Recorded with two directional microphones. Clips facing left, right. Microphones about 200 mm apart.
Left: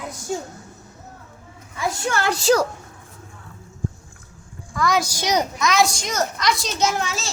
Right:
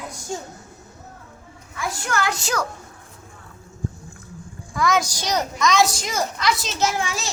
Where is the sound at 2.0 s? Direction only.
30° left (ahead or behind).